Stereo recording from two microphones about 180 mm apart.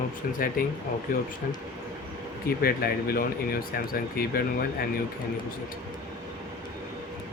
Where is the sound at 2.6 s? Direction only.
55° left (ahead or behind).